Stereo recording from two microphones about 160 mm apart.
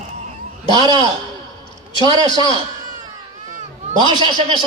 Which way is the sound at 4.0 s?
25° right (ahead or behind).